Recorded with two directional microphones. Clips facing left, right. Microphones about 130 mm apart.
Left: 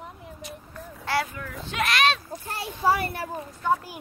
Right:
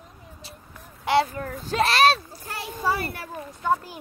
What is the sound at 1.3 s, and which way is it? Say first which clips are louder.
Speech: right 6 dB; 40° right (ahead or behind).